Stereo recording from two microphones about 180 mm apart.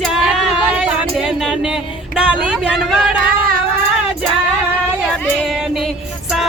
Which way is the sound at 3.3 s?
55° right (ahead or behind).